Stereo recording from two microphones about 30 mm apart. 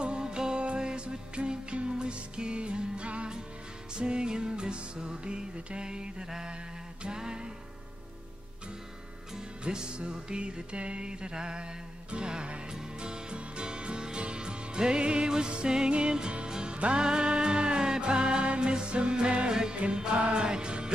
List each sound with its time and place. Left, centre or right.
0.0 s music: right
6.4 s mantra: right
7.2 s music: right
9.7 s music: right
16.7 s music: right
17.0 s music: right